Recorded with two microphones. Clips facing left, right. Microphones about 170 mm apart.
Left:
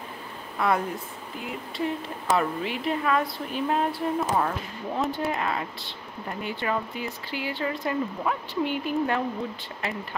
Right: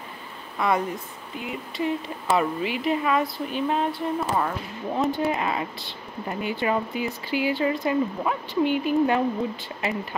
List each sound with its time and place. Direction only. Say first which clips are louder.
0.6 s a woman's voice: right 1 dB; centre (ahead or behind)
2.3 s a woman's voice: right 2 dB; 5° right (ahead or behind)